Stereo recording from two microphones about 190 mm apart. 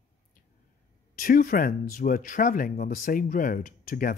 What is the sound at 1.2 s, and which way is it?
Speech, 45° left (ahead or behind).